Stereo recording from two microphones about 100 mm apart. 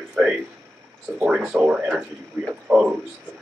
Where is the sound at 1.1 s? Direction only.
10° right (ahead or behind).